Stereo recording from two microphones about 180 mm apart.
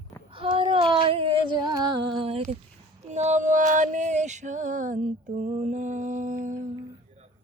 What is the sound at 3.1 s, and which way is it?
Female singing, 40° right (ahead or behind).